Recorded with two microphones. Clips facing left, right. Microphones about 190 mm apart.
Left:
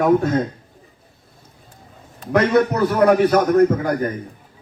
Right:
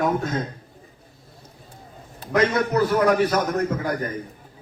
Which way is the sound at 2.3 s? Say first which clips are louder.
Left 4 dB; 60° left (ahead or behind).